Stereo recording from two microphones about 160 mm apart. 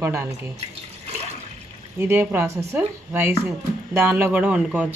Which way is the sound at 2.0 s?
15° right (ahead or behind).